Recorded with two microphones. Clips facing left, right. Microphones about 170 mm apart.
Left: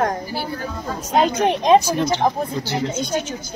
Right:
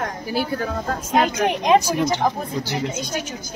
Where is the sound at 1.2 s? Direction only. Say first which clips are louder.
Left 3 dB; 30° left (ahead or behind).